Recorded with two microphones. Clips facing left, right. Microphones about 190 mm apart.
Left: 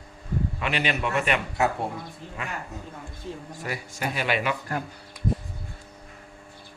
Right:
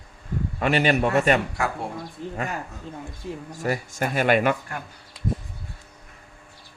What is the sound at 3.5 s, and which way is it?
Speech, 45° right (ahead or behind).